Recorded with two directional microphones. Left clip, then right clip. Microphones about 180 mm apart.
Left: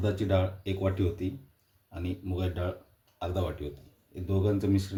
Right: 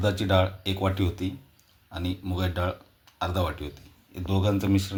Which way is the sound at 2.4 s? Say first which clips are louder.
Right 6 dB; 25° right (ahead or behind).